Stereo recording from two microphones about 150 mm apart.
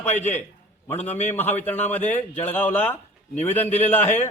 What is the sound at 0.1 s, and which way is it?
A man's voice, 50° left (ahead or behind).